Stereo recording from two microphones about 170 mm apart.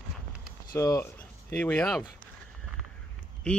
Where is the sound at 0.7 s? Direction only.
20° left (ahead or behind).